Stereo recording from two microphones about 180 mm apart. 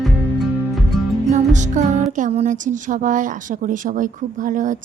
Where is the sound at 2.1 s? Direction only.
45° right (ahead or behind).